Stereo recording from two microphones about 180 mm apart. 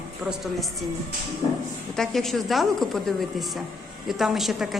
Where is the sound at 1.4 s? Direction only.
25° left (ahead or behind).